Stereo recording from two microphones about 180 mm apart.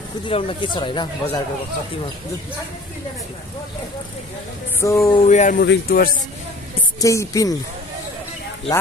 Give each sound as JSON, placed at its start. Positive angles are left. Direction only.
{"t": 0.2, "sound": "speech", "side_deg": 30}
{"t": 4.7, "sound": "speech", "side_deg": 15}
{"t": 5.2, "sound": "speech", "side_deg": 40}
{"t": 5.6, "sound": "speech", "side_deg": 60}
{"t": 7.0, "sound": "speech", "side_deg": 20}